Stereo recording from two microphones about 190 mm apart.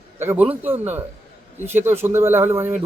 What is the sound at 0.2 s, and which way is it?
Speech, 10° right (ahead or behind).